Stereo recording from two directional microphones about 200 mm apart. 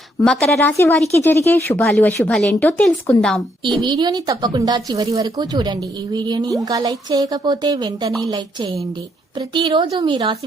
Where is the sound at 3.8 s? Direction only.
20° right (ahead or behind).